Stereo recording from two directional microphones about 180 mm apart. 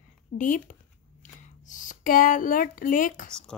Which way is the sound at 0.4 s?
45° left (ahead or behind).